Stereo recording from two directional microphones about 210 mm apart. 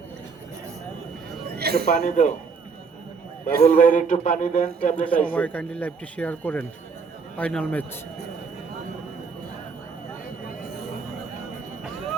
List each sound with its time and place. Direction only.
1.5 s a sound: 50° right (ahead or behind)
1.9 s a man's voice: 35° left (ahead or behind)
3.6 s a man's voice: 35° left (ahead or behind)
5.0 s a man's voice: 5° left (ahead or behind)